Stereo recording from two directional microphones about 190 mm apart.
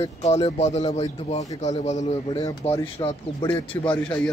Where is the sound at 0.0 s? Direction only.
30° left (ahead or behind).